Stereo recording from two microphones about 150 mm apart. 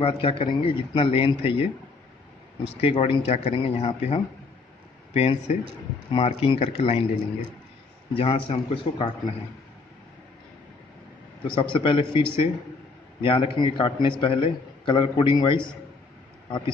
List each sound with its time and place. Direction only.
0.0 s speech: 40° left (ahead or behind)
8.1 s speech: 40° left (ahead or behind)
11.5 s speech: 35° left (ahead or behind)